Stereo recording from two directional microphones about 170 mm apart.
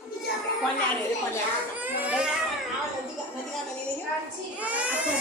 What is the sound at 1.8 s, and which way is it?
Speech, 10° right (ahead or behind).